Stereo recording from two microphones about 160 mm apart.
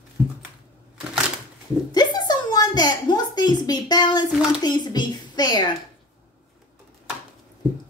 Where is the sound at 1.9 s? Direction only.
25° left (ahead or behind).